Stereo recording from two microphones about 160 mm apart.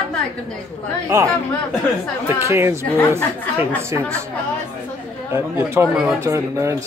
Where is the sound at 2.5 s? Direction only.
15° right (ahead or behind).